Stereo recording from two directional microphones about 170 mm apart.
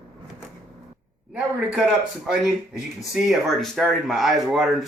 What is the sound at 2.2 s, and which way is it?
Speech, 5° right (ahead or behind).